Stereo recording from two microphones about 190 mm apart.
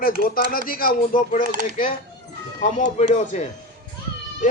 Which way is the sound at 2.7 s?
40° left (ahead or behind).